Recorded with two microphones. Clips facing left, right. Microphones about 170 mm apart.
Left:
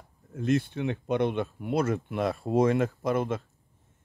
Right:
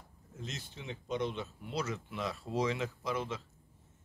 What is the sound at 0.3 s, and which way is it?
Speech, 60° left (ahead or behind).